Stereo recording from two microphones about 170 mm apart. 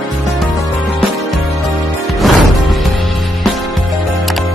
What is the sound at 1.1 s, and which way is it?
Music, centre (ahead or behind).